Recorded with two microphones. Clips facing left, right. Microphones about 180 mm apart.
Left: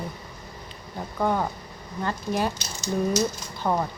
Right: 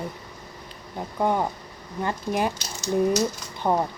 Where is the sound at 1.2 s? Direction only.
15° right (ahead or behind).